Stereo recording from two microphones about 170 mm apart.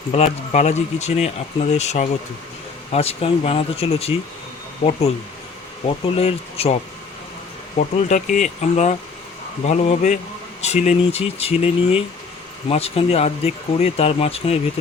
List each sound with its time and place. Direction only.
0.1 s speech: 40° left (ahead or behind)
7.8 s speech: 40° left (ahead or behind)